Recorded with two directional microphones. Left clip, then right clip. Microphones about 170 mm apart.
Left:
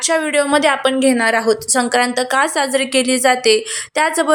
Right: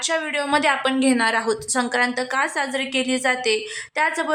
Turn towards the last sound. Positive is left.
turn(degrees=25)  # may be behind; listen again after turning